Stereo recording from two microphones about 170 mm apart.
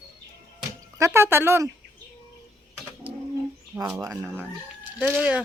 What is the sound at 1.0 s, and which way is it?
Speech, 15° right (ahead or behind).